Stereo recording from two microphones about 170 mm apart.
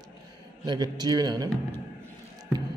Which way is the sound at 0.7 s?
25° right (ahead or behind).